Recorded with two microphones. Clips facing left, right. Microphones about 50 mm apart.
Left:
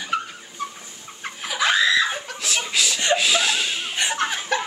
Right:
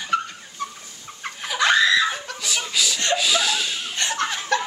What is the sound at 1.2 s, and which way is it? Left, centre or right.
Snicker, centre.